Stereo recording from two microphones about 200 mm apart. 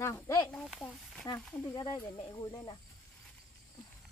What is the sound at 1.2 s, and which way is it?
Speech, 15° left (ahead or behind).